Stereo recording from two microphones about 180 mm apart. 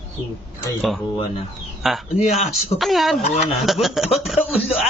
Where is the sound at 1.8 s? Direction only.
Centre (ahead or behind).